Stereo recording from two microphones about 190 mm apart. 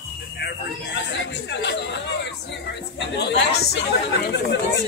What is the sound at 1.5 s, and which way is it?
Chatter, 65° left (ahead or behind).